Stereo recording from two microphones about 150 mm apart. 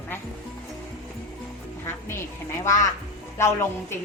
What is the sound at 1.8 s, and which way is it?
A woman's voice, 15° left (ahead or behind).